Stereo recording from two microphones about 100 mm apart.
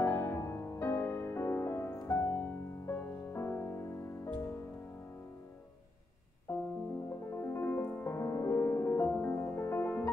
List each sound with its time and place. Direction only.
0.0 s music: 25° left (ahead or behind)
6.5 s music: 25° left (ahead or behind)